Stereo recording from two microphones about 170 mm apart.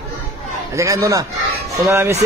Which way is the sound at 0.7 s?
20° right (ahead or behind).